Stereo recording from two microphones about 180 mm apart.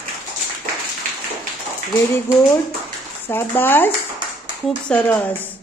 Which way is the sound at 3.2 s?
10° left (ahead or behind).